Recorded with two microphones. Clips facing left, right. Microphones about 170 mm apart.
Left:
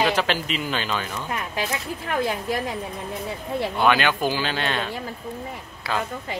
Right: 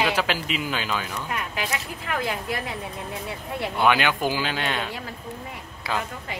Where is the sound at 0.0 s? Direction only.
5° right (ahead or behind).